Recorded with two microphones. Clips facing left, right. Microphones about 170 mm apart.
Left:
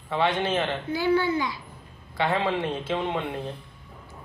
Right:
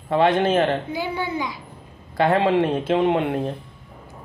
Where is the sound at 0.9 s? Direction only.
20° right (ahead or behind).